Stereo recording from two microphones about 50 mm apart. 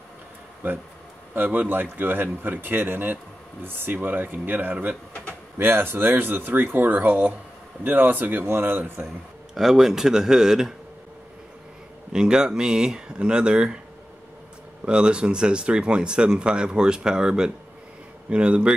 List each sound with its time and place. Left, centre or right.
0.6 s speech: right
5.6 s speech: right
9.6 s speech: centre
12.1 s speech: centre
14.9 s speech: centre